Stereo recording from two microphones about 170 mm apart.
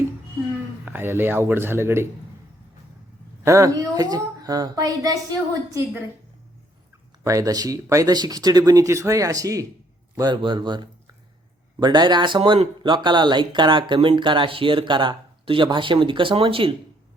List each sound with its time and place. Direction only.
0.9 s speech: 10° right (ahead or behind)
3.4 s speech: 20° right (ahead or behind)
7.3 s speech: 20° right (ahead or behind)
11.8 s speech: 25° right (ahead or behind)